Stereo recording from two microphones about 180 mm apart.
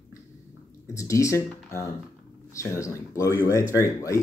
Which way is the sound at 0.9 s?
15° left (ahead or behind).